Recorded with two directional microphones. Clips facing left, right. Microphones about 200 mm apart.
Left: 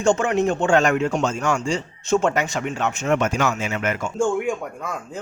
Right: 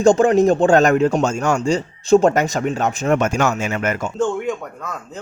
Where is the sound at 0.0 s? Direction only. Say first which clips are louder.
Right 6 dB; 35° right (ahead or behind).